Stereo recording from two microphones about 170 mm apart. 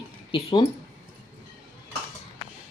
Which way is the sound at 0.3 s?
30° left (ahead or behind).